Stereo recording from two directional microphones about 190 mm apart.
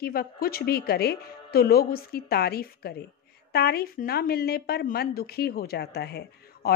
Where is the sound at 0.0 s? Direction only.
50° left (ahead or behind).